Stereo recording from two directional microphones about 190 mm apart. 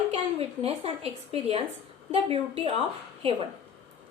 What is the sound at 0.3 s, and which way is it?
A woman's voice, 30° right (ahead or behind).